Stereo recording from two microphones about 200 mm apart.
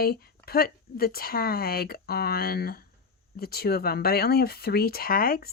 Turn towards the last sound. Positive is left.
turn(degrees=45)  # may be behind; listen again after turning